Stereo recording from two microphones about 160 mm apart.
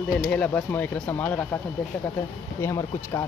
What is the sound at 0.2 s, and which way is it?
Speech, 10° left (ahead or behind).